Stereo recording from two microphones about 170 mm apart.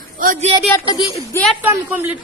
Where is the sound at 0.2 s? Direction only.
50° right (ahead or behind).